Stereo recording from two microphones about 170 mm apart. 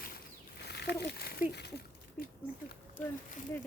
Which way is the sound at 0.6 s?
75° left (ahead or behind).